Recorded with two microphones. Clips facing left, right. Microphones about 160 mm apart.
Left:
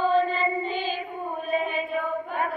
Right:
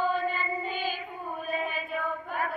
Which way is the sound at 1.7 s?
25° left (ahead or behind).